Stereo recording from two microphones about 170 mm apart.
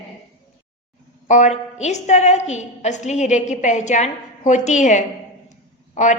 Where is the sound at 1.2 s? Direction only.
45° left (ahead or behind).